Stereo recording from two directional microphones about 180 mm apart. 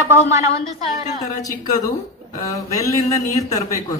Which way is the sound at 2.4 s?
20° left (ahead or behind).